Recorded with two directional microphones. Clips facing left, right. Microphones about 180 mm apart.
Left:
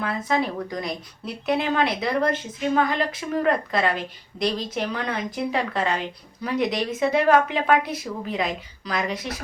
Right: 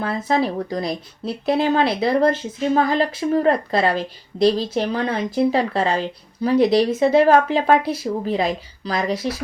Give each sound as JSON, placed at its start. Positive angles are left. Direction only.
{"t": 0.3, "sound": "speech", "side_deg": -35}